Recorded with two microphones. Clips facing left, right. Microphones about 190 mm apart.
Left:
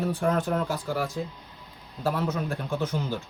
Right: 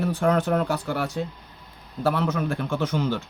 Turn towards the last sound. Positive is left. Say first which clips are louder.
# right 4 dB
turn(degrees=-80)